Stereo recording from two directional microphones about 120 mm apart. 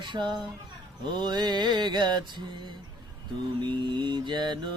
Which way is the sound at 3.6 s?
40° right (ahead or behind).